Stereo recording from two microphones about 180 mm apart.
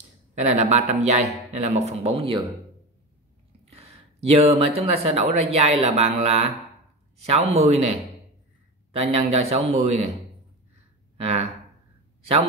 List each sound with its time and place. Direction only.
0.3 s speech: 40° right (ahead or behind)
3.7 s speech: 35° right (ahead or behind)
11.1 s speech: 35° right (ahead or behind)